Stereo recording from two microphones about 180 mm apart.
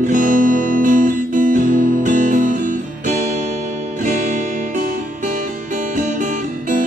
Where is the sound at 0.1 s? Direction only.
50° right (ahead or behind).